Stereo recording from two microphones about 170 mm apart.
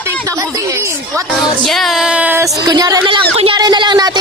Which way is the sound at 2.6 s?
20° right (ahead or behind).